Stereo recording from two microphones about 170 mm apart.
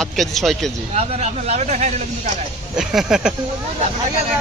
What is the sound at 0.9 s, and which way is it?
Speech, 40° right (ahead or behind).